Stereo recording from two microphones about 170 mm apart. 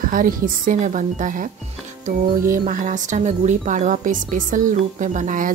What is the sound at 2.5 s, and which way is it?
A woman's voice, 55° right (ahead or behind).